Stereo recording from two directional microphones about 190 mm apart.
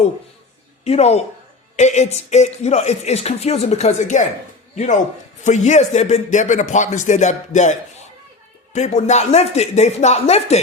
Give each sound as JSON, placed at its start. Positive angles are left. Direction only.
{"t": 0.9, "sound": "speech", "side_deg": 35}